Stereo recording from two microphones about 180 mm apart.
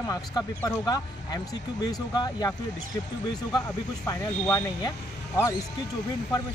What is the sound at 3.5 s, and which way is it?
Speech, 15° left (ahead or behind).